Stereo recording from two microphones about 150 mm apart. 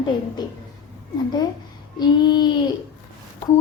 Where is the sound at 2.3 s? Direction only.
30° left (ahead or behind).